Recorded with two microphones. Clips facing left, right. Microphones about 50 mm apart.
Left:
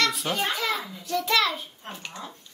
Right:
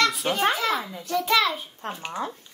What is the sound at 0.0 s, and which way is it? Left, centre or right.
Children playing, centre.